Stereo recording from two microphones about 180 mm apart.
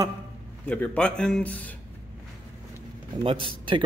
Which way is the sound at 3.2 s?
30° right (ahead or behind).